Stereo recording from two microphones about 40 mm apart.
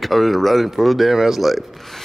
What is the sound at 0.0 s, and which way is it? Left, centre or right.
Speech, centre.